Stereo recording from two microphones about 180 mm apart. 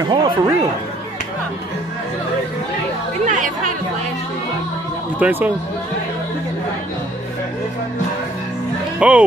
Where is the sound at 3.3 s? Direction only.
45° right (ahead or behind).